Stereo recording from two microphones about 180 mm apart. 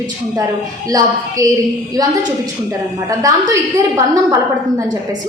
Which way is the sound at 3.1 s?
20° right (ahead or behind).